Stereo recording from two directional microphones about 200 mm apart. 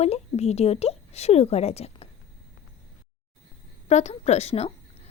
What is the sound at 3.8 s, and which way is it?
A woman's voice, 35° left (ahead or behind).